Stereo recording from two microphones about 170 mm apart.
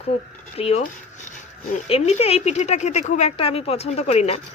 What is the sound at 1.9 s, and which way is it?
Speech, 35° left (ahead or behind).